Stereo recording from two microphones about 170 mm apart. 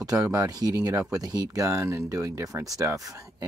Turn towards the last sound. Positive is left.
turn(degrees=-20)  # may be behind; listen again after turning